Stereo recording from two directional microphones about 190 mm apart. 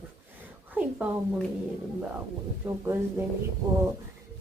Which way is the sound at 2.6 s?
10° right (ahead or behind).